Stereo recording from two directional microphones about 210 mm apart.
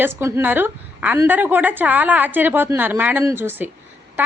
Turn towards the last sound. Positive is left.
turn(degrees=-10)  # may be behind; listen again after turning